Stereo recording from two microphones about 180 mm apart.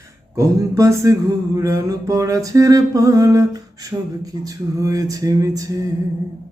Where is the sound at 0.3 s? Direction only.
15° right (ahead or behind).